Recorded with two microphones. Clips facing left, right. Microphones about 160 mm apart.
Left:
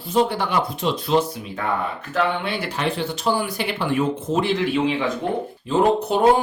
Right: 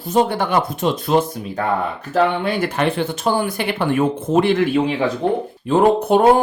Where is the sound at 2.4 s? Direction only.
50° right (ahead or behind).